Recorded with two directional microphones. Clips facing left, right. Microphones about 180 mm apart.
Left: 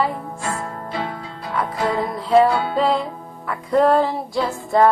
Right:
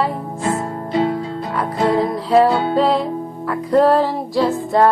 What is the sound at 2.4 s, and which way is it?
Music, 25° right (ahead or behind).